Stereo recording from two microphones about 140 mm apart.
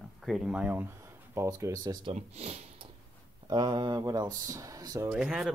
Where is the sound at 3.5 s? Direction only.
30° right (ahead or behind).